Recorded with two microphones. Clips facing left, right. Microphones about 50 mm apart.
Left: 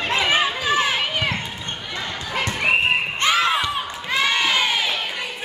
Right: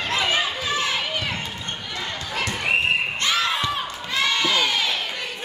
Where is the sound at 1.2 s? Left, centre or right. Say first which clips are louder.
Left 3 dB; left.